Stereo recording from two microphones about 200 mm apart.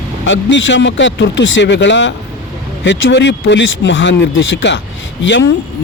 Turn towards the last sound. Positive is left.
turn(degrees=60)  # may be behind; listen again after turning